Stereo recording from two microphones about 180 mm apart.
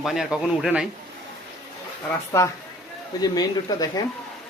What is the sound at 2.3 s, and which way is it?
A woman's voice, 15° left (ahead or behind).